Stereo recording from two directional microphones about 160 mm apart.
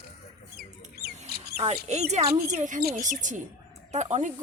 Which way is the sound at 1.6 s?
45° right (ahead or behind).